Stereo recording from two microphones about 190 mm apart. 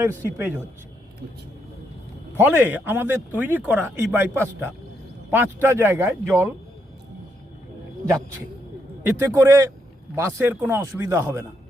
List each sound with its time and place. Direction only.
0.0 s speech: 10° right (ahead or behind)
2.4 s speech: 10° right (ahead or behind)
9.0 s speech: 10° right (ahead or behind)